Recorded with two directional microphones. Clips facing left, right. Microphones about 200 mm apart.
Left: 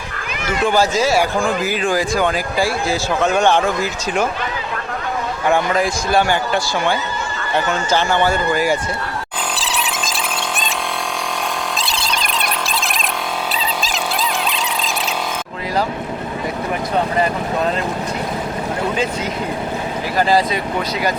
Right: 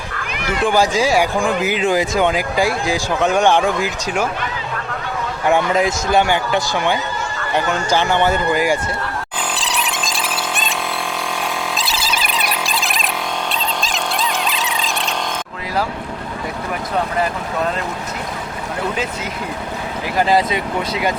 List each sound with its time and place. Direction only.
0.4 s speech: 15° right (ahead or behind)
5.5 s speech: 20° right (ahead or behind)
7.5 s speech: 15° right (ahead or behind)
9.6 s a sound: centre (ahead or behind)
11.8 s music: 5° right (ahead or behind)
20.1 s speech: 20° right (ahead or behind)